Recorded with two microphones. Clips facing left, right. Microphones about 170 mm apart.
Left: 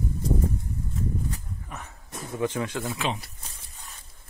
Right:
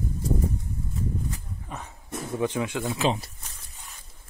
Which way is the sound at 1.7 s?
15° right (ahead or behind).